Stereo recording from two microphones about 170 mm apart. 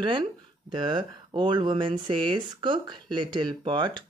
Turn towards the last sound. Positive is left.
turn(degrees=-25)  # may be behind; listen again after turning